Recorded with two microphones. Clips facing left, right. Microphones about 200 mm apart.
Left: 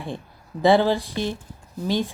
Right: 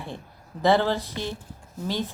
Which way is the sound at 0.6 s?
15° left (ahead or behind).